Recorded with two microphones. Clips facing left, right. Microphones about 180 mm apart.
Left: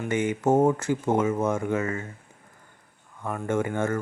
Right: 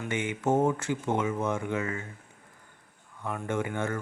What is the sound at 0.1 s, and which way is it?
Speech, 40° left (ahead or behind).